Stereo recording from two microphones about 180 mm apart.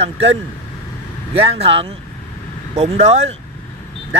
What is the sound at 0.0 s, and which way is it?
Speech, 35° right (ahead or behind).